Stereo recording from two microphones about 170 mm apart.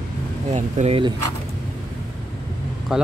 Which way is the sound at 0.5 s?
45° right (ahead or behind).